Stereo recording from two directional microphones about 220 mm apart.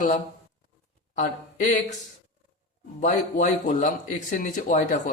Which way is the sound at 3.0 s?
35° left (ahead or behind).